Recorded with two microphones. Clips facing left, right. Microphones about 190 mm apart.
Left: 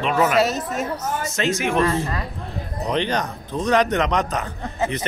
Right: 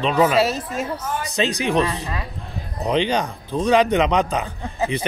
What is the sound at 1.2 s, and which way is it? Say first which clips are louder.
Speech: right 2 dB; 15° right (ahead or behind).